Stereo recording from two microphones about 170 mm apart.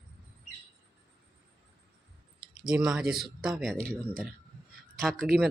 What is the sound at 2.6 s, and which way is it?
Speech, 5° right (ahead or behind).